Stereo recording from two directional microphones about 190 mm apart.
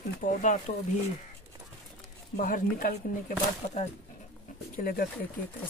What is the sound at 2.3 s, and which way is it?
Speech, 45° left (ahead or behind).